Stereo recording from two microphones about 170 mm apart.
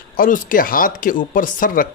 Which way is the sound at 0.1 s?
55° left (ahead or behind).